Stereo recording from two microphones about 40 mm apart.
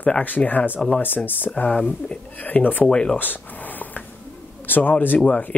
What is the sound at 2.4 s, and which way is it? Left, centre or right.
Speech, left.